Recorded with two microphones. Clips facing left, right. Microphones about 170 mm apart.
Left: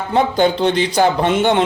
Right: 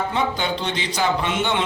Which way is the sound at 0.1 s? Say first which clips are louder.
Left 8 dB; 45° left (ahead or behind).